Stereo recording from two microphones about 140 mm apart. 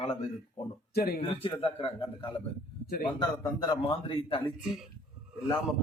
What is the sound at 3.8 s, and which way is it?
Speech, 40° left (ahead or behind).